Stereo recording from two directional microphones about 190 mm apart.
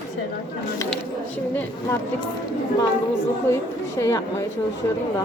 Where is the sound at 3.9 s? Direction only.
15° left (ahead or behind).